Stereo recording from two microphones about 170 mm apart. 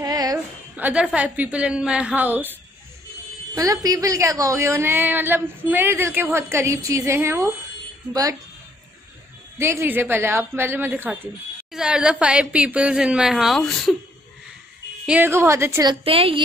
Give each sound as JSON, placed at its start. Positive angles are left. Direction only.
{"t": 0.0, "sound": "a sound", "side_deg": -20}
{"t": 0.7, "sound": "a woman's voice", "side_deg": -10}
{"t": 3.5, "sound": "a woman's voice", "side_deg": -20}
{"t": 9.6, "sound": "a woman's voice", "side_deg": -15}
{"t": 15.0, "sound": "a woman's voice", "side_deg": -10}
{"t": 15.9, "sound": "a woman's voice", "side_deg": -35}